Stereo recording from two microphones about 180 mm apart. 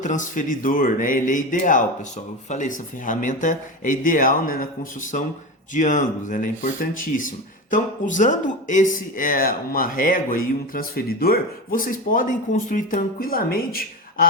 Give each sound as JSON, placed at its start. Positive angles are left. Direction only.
{"t": 0.0, "sound": "speech", "side_deg": 45}